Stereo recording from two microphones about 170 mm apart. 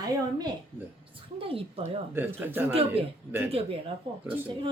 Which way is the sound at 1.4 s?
35° right (ahead or behind).